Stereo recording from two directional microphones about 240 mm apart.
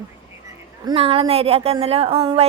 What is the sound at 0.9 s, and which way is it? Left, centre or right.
A woman's voice, right.